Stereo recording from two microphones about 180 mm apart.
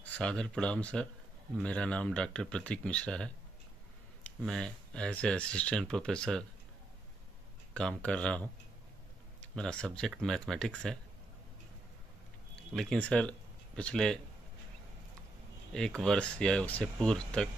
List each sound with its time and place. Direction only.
0.0 s speech: 5° left (ahead or behind)
7.7 s speech: 5° left (ahead or behind)
12.7 s speech: 5° left (ahead or behind)
16.0 s speech: 5° left (ahead or behind)